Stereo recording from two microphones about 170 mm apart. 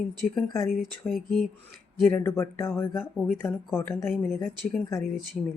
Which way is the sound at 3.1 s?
Centre (ahead or behind).